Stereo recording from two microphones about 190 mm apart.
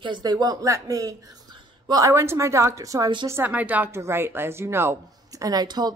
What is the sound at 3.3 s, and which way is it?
A woman's voice, 10° right (ahead or behind).